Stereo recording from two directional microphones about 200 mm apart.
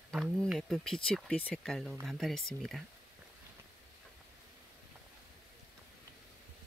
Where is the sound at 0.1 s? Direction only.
Centre (ahead or behind).